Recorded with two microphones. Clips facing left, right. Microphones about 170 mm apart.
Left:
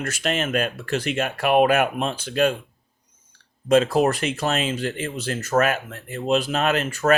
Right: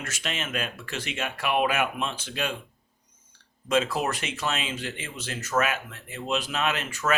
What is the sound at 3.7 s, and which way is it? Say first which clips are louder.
Speech: left 8 dB; 35° left (ahead or behind).